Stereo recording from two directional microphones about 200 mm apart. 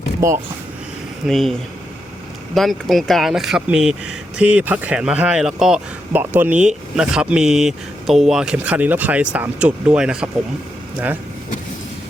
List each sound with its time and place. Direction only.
0.2 s speech: 15° right (ahead or behind)
1.3 s speech: centre (ahead or behind)
2.6 s speech: centre (ahead or behind)